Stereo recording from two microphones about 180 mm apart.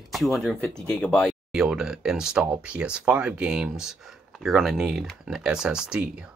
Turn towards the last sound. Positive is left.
turn(degrees=-5)  # may be behind; listen again after turning